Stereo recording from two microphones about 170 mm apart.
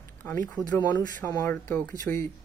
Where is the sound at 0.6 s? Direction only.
20° right (ahead or behind).